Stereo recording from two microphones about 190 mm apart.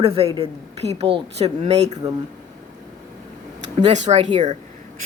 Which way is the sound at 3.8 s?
35° right (ahead or behind).